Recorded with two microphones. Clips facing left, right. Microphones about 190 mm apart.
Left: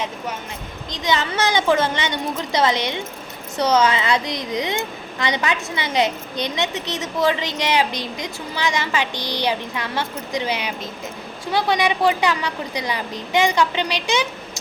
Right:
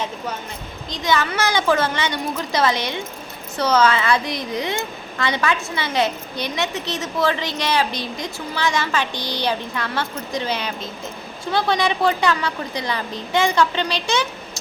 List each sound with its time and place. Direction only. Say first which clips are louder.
0.9 s a child's voice: right 1 dB; 20° left (ahead or behind)